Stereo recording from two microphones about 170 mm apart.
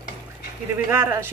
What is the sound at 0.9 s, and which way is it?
Speech, 15° right (ahead or behind).